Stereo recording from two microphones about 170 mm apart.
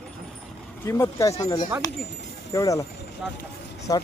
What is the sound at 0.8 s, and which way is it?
Speech, 15° left (ahead or behind).